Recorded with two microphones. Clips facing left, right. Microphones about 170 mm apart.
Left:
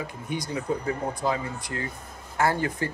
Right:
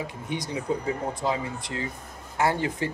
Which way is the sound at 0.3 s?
20° right (ahead or behind).